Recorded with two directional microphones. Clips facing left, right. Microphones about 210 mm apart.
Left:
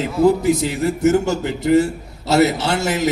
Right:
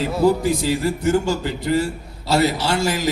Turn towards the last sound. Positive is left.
turn(degrees=25)  # may be behind; listen again after turning